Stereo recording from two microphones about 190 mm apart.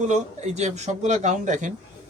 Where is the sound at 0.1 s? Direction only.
35° right (ahead or behind).